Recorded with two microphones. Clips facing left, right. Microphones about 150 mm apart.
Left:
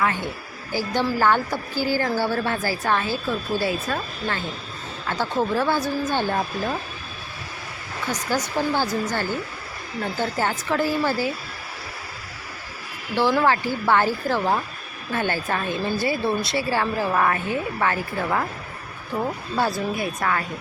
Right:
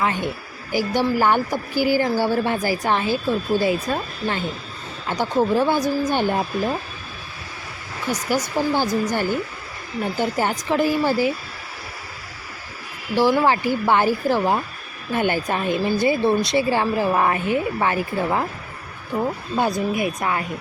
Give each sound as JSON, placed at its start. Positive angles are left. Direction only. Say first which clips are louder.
{"t": 0.0, "sound": "a woman's voice", "louder": "right 2 dB", "side_deg": -20}
{"t": 8.1, "sound": "a woman's voice", "louder": "right 3 dB", "side_deg": -10}
{"t": 13.4, "sound": "a woman's voice", "louder": "right 2 dB", "side_deg": -15}
{"t": 19.5, "sound": "a woman's voice", "louder": "right 3 dB", "side_deg": -20}